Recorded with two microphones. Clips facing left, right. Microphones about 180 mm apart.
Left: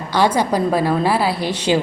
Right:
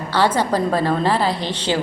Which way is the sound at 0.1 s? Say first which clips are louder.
Left 2 dB; 15° left (ahead or behind).